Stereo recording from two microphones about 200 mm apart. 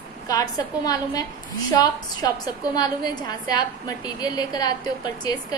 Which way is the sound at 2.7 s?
20° left (ahead or behind).